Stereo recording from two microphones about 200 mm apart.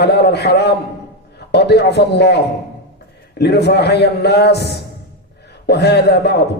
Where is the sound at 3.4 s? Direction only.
55° left (ahead or behind).